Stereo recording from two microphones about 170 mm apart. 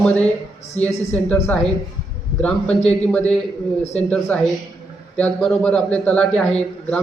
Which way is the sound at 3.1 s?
5° left (ahead or behind).